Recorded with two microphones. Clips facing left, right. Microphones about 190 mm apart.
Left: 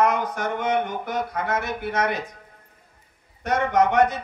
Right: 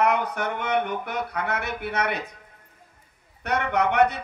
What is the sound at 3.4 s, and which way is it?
Speech, 65° right (ahead or behind).